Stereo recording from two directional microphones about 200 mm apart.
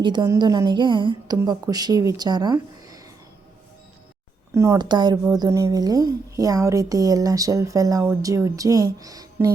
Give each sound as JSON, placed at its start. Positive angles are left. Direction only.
{"t": 0.0, "sound": "a woman's voice", "side_deg": -20}
{"t": 4.5, "sound": "a woman's voice", "side_deg": -15}